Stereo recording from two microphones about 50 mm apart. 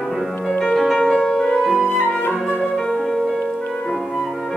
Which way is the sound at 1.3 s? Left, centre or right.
Centre.